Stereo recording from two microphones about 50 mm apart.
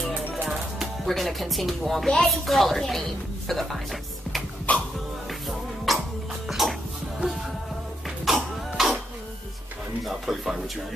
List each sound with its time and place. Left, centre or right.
0.3 s music: centre
1.0 s speech: centre
4.7 s music: left
5.9 s music: centre
6.4 s a sound: centre
8.3 s throat clearing: centre
10.0 s speech: centre